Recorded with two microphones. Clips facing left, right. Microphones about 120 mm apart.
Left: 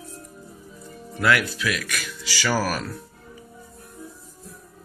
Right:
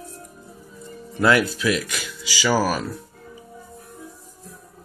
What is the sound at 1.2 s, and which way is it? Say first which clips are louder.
Speech: right 4 dB; 25° right (ahead or behind).